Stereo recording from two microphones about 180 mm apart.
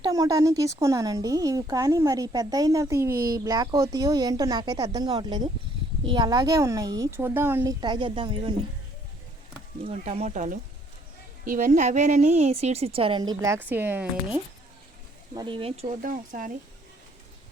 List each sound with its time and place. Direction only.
0.0 s speech: 20° right (ahead or behind)
9.8 s a woman's voice: 35° right (ahead or behind); by 14.4 s 10° right (ahead or behind)
15.4 s a woman's voice: 30° right (ahead or behind); by 16.5 s 50° right (ahead or behind)